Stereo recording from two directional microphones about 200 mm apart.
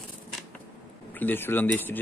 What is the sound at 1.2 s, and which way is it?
Speech, 10° left (ahead or behind).